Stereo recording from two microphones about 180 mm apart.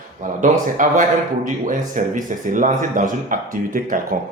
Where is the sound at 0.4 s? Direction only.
45° right (ahead or behind).